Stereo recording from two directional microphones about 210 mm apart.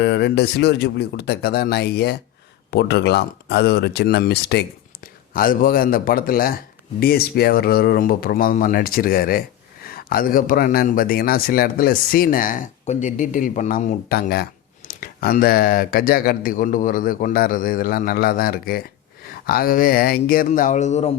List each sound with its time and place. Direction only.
0.0 s a man's voice: 55° left (ahead or behind); by 21.1 s 35° left (ahead or behind)